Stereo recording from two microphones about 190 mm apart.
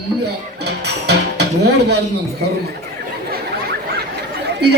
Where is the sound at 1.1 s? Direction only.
60° right (ahead or behind).